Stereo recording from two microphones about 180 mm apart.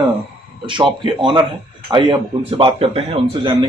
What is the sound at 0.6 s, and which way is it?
Speech, 25° right (ahead or behind).